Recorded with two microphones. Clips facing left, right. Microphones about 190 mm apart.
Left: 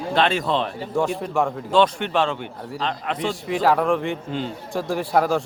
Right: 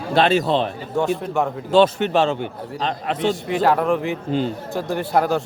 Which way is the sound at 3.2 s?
Centre (ahead or behind).